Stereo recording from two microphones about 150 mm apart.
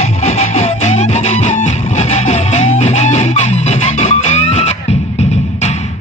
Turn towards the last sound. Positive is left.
turn(degrees=45)  # may be behind; listen again after turning